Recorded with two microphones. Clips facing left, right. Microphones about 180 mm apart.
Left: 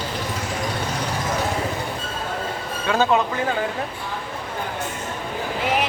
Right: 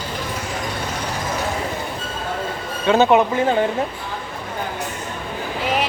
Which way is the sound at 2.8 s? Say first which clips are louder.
Right 5 dB; 25° right (ahead or behind).